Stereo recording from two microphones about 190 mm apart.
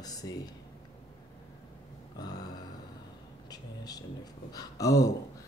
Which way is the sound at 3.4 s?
20° left (ahead or behind).